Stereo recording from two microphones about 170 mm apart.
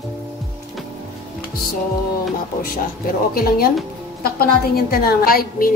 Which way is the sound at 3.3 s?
60° left (ahead or behind).